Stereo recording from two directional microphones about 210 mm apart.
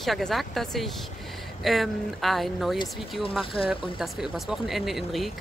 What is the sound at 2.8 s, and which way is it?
Speech, 25° left (ahead or behind).